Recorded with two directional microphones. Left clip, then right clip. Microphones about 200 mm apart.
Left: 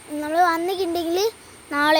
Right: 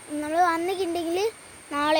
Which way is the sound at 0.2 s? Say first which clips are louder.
Left 3 dB; 5° left (ahead or behind).